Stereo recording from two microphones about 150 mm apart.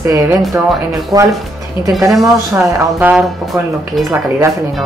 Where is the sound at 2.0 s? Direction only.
Centre (ahead or behind).